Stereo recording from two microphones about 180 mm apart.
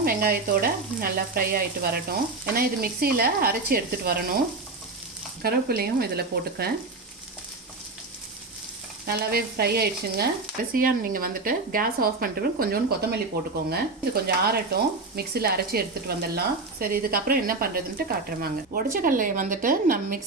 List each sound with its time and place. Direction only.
0.0 s speech: 55° right (ahead or behind)
5.4 s speech: 55° right (ahead or behind)
9.0 s speech: 60° right (ahead or behind)
10.7 s speech: 50° right (ahead or behind)